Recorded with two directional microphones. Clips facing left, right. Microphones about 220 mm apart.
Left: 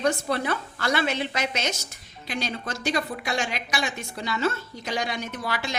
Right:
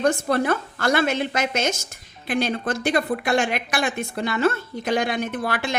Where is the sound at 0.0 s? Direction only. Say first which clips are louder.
Right 5 dB; 50° right (ahead or behind).